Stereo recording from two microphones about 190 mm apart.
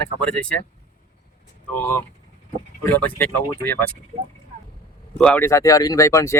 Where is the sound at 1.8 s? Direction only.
10° left (ahead or behind).